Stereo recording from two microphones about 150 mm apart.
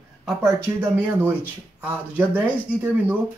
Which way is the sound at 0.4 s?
15° right (ahead or behind).